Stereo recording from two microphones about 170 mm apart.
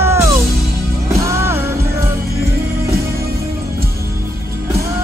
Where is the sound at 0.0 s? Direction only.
15° right (ahead or behind).